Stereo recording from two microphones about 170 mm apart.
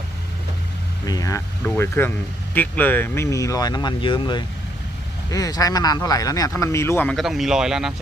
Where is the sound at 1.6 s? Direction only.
10° left (ahead or behind).